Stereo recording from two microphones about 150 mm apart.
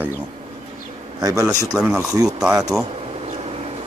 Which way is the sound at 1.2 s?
25° right (ahead or behind).